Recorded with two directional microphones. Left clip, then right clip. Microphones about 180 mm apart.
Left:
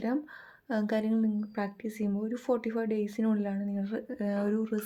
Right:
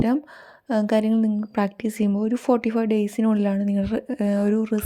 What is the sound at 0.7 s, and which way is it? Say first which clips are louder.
Speech: right 9 dB; 40° right (ahead or behind).